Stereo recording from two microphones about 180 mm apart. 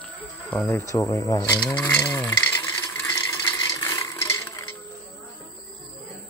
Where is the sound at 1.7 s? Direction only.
10° left (ahead or behind).